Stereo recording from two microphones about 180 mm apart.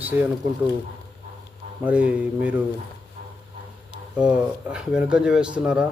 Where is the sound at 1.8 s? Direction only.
10° right (ahead or behind).